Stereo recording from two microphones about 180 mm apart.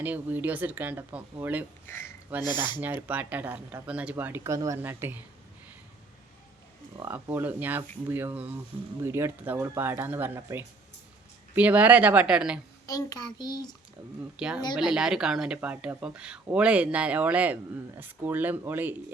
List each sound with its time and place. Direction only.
0.0 s speech: 10° right (ahead or behind)
2.4 s a child's voice: 25° left (ahead or behind)
2.8 s speech: 10° right (ahead or behind)
6.9 s speech: 15° right (ahead or behind)
12.8 s a child's voice: 20° left (ahead or behind)
14.3 s speech: 5° right (ahead or behind)